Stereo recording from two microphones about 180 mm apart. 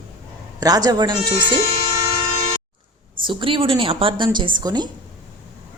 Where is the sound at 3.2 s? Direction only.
30° right (ahead or behind).